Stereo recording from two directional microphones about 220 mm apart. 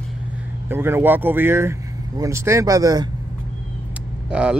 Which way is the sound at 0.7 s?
10° right (ahead or behind).